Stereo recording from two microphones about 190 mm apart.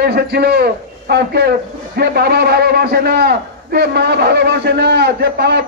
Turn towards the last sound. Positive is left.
turn(degrees=-60)  # may be behind; listen again after turning